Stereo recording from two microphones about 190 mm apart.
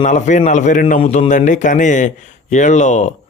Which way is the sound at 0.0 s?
40° left (ahead or behind).